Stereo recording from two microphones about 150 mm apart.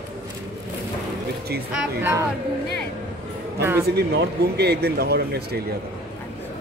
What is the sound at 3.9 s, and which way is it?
Speech, 90° right.